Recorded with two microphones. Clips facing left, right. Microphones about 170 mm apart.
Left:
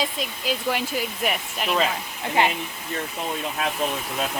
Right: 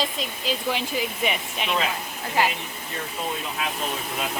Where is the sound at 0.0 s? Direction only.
5° left (ahead or behind).